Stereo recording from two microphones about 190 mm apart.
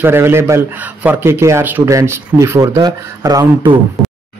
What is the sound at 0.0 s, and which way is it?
A man's voice, 10° right (ahead or behind).